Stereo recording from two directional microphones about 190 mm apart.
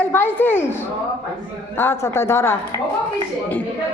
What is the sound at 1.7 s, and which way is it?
A woman's voice, 15° left (ahead or behind).